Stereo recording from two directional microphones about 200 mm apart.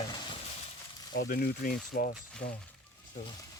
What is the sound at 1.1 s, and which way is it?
Speech, 50° left (ahead or behind).